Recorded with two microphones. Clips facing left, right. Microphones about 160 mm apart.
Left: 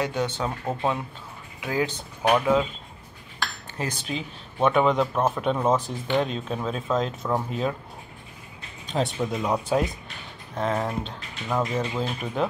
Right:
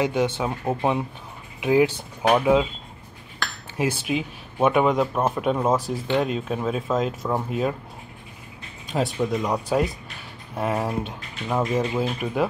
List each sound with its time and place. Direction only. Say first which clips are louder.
0.0 s speech: right 4 dB; 15° right (ahead or behind)
3.7 s speech: right 8 dB; 10° right (ahead or behind)
8.8 s speech: right 2 dB; 5° right (ahead or behind)
10.5 s speech: right 1 dB; 10° right (ahead or behind)